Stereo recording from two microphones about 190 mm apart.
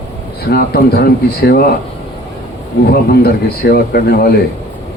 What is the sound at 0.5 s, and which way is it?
Speech, 55° left (ahead or behind).